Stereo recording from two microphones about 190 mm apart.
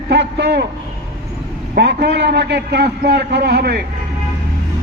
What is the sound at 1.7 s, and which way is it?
A man's voice, 60° right (ahead or behind).